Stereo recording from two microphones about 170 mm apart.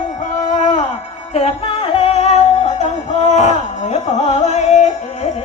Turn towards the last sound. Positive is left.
turn(degrees=45)  # may be behind; listen again after turning